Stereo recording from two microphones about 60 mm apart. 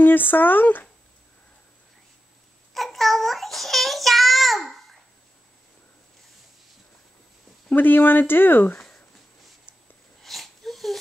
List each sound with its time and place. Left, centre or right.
0.0 s speech: left
2.7 s child singing: centre
7.7 s speech: left
10.2 s wheeze: centre